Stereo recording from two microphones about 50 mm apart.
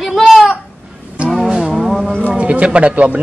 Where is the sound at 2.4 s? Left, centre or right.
Right.